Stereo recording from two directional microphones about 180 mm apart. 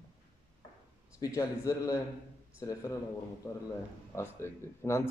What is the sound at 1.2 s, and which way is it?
Speech, 20° left (ahead or behind).